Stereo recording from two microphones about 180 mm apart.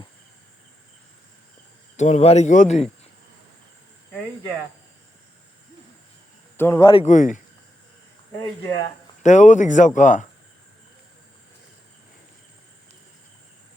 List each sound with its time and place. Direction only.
2.0 s speech: 40° left (ahead or behind)
6.6 s a man's voice: 15° left (ahead or behind)
6.9 s speech: 40° left (ahead or behind)
8.3 s speech: 20° left (ahead or behind)
9.2 s speech: 40° left (ahead or behind)